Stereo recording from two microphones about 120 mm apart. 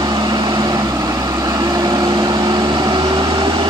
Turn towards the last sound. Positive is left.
turn(degrees=-40)  # may be behind; listen again after turning